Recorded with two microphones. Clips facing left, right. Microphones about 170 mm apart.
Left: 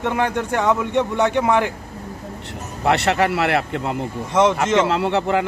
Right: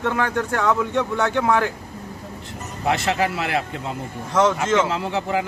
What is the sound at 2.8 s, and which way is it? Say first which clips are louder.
Speech: left 3 dB; 65° left (ahead or behind).